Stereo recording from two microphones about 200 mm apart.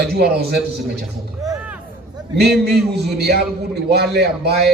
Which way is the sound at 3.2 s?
55° right (ahead or behind).